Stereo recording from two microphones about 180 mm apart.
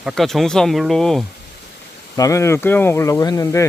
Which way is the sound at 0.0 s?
Centre (ahead or behind).